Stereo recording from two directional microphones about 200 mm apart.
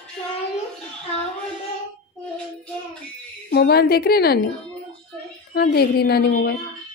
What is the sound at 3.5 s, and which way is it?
Speech, 50° left (ahead or behind).